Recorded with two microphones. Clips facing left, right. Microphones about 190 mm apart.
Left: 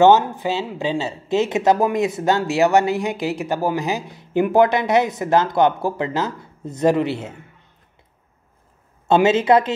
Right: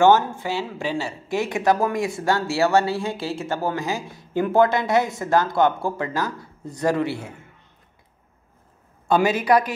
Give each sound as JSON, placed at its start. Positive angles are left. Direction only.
{"t": 0.0, "sound": "speech", "side_deg": 20}
{"t": 9.0, "sound": "speech", "side_deg": 25}